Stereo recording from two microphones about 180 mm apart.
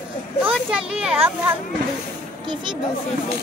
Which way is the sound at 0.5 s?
5° right (ahead or behind).